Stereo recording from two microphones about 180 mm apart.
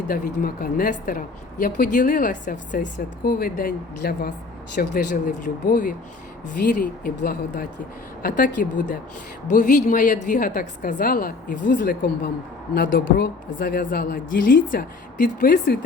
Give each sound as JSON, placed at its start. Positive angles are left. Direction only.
{"t": 0.1, "sound": "a woman's voice", "side_deg": 55}
{"t": 12.7, "sound": "a woman's voice", "side_deg": 65}